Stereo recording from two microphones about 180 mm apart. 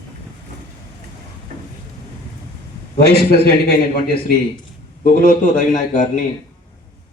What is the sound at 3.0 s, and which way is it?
A man's voice, 60° left (ahead or behind).